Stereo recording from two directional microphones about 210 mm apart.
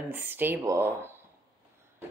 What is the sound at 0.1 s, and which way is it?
Speech, 10° right (ahead or behind).